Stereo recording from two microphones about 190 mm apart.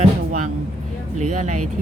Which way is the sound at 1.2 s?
40° right (ahead or behind).